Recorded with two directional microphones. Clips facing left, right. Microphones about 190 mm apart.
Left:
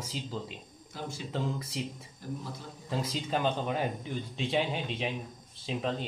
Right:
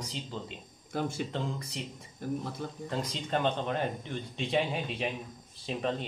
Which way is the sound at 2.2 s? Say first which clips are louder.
Right 5 dB; 55° right (ahead or behind).